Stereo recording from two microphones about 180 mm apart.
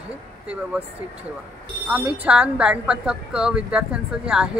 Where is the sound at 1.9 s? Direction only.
5° right (ahead or behind).